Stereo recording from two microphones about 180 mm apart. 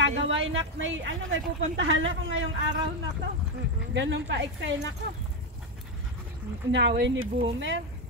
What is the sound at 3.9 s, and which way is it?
Speech, 85° right.